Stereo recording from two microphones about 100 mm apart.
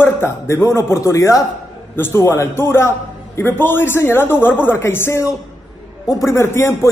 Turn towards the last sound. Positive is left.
turn(degrees=25)  # may be behind; listen again after turning